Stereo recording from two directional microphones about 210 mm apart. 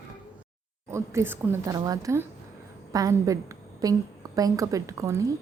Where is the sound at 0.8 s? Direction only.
15° right (ahead or behind).